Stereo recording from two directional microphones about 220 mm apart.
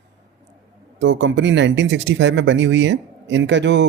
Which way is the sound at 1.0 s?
55° right (ahead or behind).